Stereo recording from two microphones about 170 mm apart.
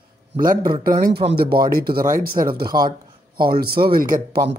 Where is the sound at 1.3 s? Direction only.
65° right (ahead or behind).